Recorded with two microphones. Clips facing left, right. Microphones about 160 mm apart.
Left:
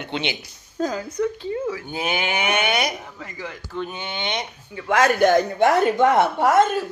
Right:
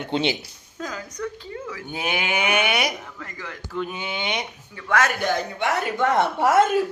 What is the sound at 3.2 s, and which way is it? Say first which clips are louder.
Speech: left 3 dB; 15° left (ahead or behind).